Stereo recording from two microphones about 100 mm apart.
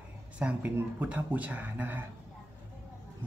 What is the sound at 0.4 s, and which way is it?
Speech, 10° right (ahead or behind).